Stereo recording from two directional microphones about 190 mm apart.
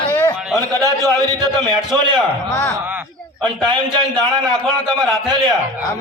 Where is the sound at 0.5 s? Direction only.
20° right (ahead or behind).